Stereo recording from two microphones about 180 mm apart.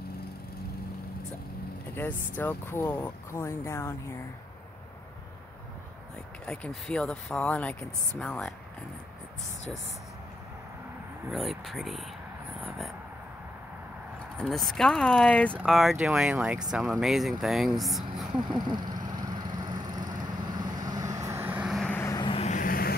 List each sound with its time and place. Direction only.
2.3 s speech: 10° left (ahead or behind)
6.4 s speech: 5° left (ahead or behind)
11.3 s speech: centre (ahead or behind)
14.3 s speech: centre (ahead or behind)
18.5 s vehicle: 25° right (ahead or behind); by 21.9 s centre (ahead or behind)
21.9 s vehicle: 15° left (ahead or behind)
22.2 s vehicle: 30° left (ahead or behind)
22.5 s vehicle: 50° left (ahead or behind)